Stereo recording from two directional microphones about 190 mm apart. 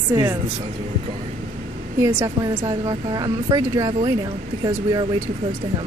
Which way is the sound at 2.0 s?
15° right (ahead or behind).